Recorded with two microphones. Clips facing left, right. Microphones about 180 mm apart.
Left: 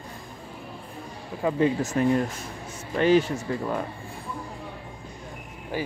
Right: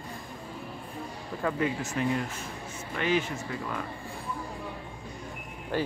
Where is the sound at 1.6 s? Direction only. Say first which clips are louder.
Left 9 dB; 40° left (ahead or behind).